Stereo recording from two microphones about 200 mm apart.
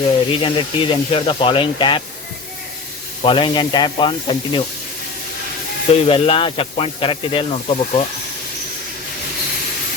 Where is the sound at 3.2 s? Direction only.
25° left (ahead or behind).